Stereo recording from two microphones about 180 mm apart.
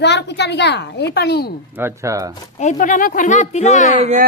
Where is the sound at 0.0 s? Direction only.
70° left (ahead or behind).